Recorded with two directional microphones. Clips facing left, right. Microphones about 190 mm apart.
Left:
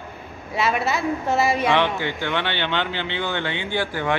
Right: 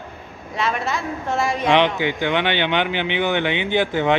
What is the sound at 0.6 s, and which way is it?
A woman's voice, 5° left (ahead or behind).